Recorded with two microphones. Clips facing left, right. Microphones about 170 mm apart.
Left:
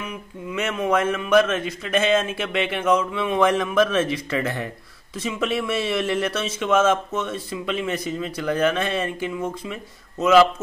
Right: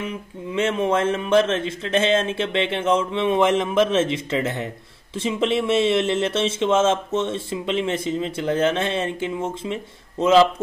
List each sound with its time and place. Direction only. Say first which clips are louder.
0.0 s speech: right 3 dB; 25° right (ahead or behind)